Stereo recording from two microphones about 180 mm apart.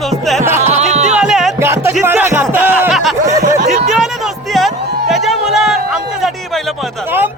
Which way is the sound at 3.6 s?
40° right (ahead or behind).